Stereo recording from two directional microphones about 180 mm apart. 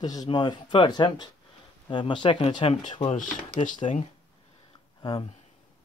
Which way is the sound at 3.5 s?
45° left (ahead or behind).